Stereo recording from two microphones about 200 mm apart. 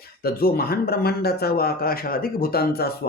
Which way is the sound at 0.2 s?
50° left (ahead or behind).